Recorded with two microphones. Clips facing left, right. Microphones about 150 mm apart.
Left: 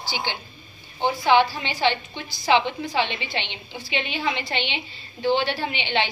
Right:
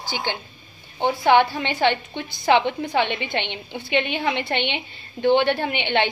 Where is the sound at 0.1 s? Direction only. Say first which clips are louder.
Right 3 dB; 50° right (ahead or behind).